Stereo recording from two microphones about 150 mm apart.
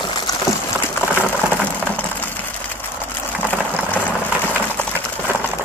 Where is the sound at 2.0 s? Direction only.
10° left (ahead or behind).